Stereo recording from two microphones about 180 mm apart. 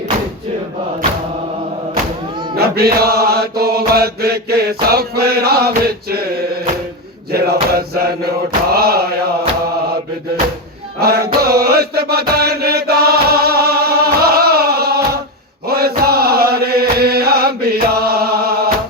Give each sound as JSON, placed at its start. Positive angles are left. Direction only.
{"t": 2.6, "sound": "mantra", "side_deg": -60}
{"t": 11.0, "sound": "mantra", "side_deg": -60}
{"t": 15.6, "sound": "chant", "side_deg": -60}